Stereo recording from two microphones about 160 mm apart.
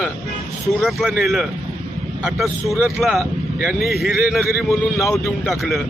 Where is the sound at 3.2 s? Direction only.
15° right (ahead or behind).